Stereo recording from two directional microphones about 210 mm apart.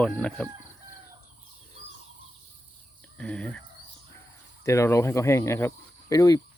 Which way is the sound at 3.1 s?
5° left (ahead or behind).